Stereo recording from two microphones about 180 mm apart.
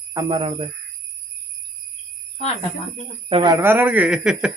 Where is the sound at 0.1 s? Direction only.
25° right (ahead or behind).